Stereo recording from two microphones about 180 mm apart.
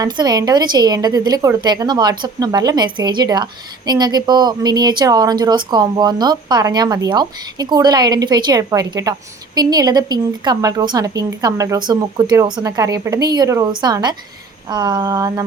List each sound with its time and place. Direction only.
0.0 s a woman's voice: 20° right (ahead or behind)